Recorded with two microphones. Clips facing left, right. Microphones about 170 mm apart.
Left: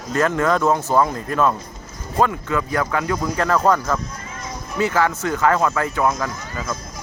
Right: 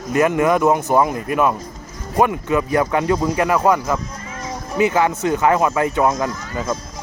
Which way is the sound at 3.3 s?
15° right (ahead or behind).